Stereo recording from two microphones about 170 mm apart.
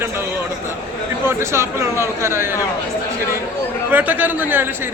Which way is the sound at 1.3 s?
15° right (ahead or behind).